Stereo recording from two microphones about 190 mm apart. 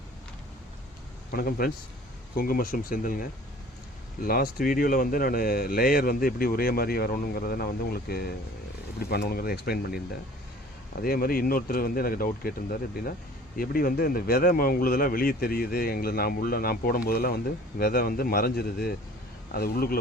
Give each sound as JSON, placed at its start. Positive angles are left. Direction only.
{"t": 1.3, "sound": "speech", "side_deg": 50}
{"t": 11.0, "sound": "speech", "side_deg": 50}